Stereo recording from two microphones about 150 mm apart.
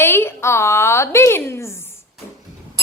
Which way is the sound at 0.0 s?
15° left (ahead or behind).